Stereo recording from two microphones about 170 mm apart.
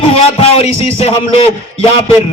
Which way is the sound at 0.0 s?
35° left (ahead or behind).